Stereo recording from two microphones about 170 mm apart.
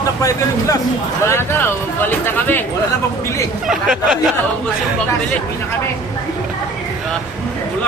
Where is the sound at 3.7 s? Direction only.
5° right (ahead or behind).